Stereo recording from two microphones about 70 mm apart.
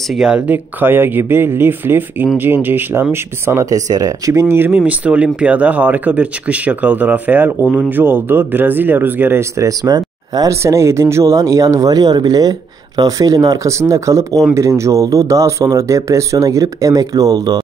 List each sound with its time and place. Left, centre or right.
0.1 s speech: centre
0.5 s speech: right
3.7 s speech: right
9.8 s a sound: right
10.5 s speech: right